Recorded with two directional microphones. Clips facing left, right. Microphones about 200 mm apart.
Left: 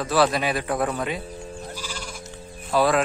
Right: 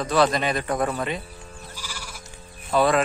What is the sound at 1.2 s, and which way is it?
Sheep, 30° left (ahead or behind).